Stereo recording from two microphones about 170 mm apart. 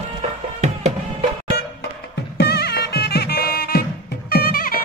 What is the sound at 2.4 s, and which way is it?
Music, 75° left (ahead or behind).